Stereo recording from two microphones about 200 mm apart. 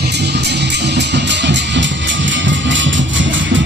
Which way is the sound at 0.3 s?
60° right (ahead or behind).